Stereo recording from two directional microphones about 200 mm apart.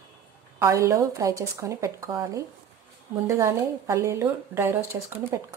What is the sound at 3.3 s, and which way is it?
A woman's voice, 15° right (ahead or behind).